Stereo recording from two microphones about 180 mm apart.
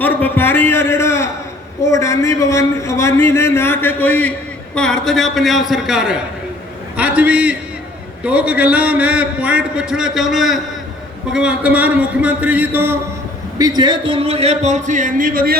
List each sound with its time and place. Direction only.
0.0 s a man's voice: 10° left (ahead or behind); by 13.0 s 10° right (ahead or behind)
13.6 s a man's voice: 20° right (ahead or behind); by 15.5 s 55° right (ahead or behind)